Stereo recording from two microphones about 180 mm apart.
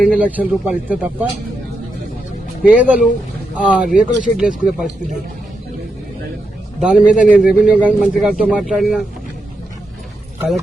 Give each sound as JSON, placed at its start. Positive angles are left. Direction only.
{"t": 0.0, "sound": "speech", "side_deg": -5}
{"t": 2.6, "sound": "speech", "side_deg": -5}
{"t": 6.7, "sound": "speech", "side_deg": -5}